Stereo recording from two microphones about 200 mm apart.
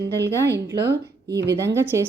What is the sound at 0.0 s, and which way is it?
A woman's voice, 60° right (ahead or behind).